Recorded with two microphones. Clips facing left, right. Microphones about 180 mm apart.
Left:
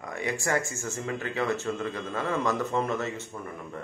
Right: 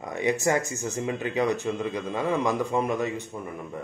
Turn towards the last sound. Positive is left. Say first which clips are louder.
# right 3 dB
turn(degrees=-15)  # may be behind; listen again after turning